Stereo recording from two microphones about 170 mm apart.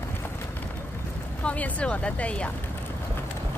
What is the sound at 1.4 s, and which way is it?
Speech, 10° left (ahead or behind).